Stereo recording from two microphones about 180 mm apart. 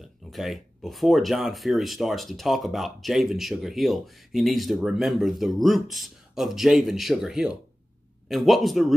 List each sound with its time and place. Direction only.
0.3 s speech: centre (ahead or behind)